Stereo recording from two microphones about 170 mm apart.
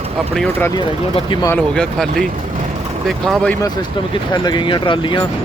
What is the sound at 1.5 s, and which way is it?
Speech, 5° left (ahead or behind).